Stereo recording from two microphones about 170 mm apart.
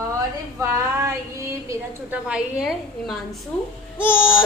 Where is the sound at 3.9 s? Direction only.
10° left (ahead or behind).